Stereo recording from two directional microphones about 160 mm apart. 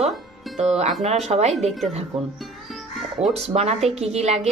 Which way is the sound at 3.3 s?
40° right (ahead or behind).